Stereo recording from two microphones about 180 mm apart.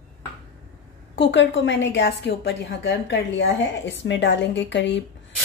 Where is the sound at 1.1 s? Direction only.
80° left.